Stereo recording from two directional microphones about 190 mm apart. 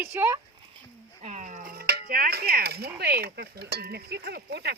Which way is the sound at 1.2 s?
40° right (ahead or behind).